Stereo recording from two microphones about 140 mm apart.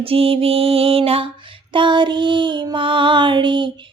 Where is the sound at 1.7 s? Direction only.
35° right (ahead or behind).